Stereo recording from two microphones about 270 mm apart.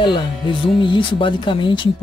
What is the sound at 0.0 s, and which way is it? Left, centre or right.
Speech, centre.